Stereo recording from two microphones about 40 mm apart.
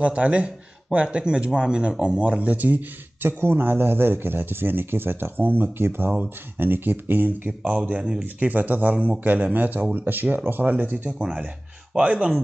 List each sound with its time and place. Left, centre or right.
0.0 s speech: right
2.5 s speech: right
3.2 s speech: right
9.9 s speech: right
10.3 s speech: right
12.0 s speech: right